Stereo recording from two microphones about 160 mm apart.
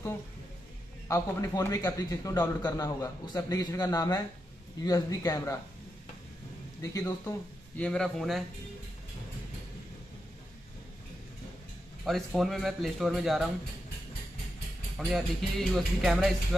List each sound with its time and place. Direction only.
1.0 s a man's voice: 20° left (ahead or behind)
6.8 s speech: 20° left (ahead or behind); by 8.5 s centre (ahead or behind)
12.1 s speech: centre (ahead or behind)
15.0 s speech: centre (ahead or behind)